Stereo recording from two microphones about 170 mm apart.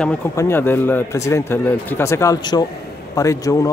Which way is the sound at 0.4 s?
15° left (ahead or behind).